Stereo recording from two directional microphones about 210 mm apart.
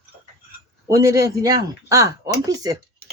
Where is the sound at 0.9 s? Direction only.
15° right (ahead or behind).